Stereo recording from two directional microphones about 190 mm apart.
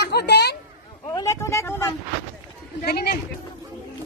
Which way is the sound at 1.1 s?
15° left (ahead or behind).